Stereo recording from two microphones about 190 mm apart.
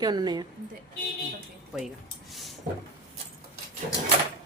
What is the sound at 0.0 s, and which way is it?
Speech, 20° right (ahead or behind).